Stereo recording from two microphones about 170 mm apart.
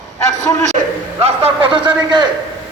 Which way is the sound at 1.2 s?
35° right (ahead or behind).